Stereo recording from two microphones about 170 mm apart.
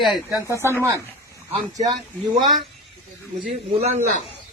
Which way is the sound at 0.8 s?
15° right (ahead or behind).